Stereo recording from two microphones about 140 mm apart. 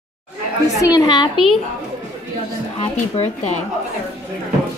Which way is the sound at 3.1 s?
50° left (ahead or behind).